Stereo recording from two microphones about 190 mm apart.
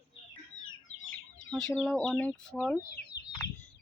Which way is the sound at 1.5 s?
5° left (ahead or behind).